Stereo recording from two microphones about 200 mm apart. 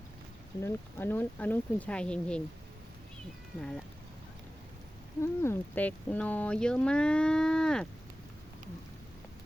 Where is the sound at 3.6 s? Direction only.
5° left (ahead or behind).